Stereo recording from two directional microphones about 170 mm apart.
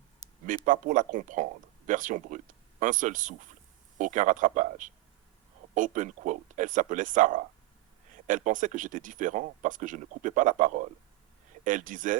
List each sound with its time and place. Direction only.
0.4 s speech: 50° right (ahead or behind)